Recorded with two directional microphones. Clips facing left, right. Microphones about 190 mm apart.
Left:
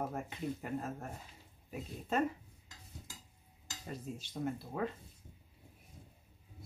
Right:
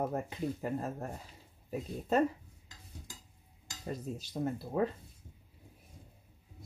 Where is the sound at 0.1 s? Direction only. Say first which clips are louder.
Right 4 dB; 35° right (ahead or behind).